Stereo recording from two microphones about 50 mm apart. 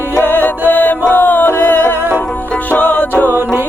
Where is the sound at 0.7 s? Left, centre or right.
Left.